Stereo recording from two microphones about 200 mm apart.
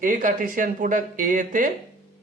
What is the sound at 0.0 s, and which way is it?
A man's voice, 40° right (ahead or behind).